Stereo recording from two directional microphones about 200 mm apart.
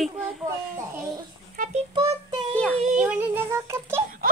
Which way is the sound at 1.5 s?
40° right (ahead or behind).